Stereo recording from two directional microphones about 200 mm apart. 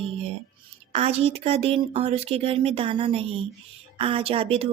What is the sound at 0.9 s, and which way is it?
Speech, 30° right (ahead or behind).